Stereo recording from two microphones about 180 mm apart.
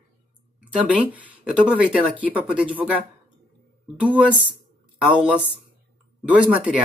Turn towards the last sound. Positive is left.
turn(degrees=-5)  # may be behind; listen again after turning